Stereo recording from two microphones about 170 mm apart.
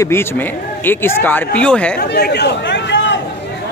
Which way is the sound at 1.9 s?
70° left (ahead or behind).